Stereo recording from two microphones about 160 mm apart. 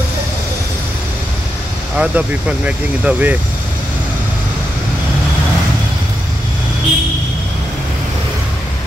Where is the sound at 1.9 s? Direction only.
10° right (ahead or behind).